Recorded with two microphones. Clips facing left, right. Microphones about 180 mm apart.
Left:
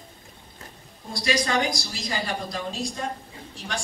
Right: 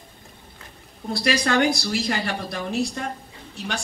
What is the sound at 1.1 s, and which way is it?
A man's voice, 65° right (ahead or behind).